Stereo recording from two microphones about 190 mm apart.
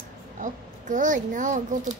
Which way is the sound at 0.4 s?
40° right (ahead or behind).